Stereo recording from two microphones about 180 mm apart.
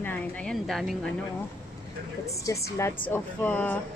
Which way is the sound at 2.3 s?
15° left (ahead or behind).